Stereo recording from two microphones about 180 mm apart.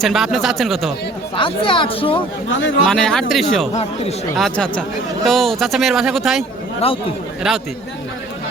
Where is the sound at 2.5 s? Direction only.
90° left.